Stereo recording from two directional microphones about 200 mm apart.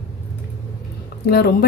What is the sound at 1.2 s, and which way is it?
Speech, 50° left (ahead or behind).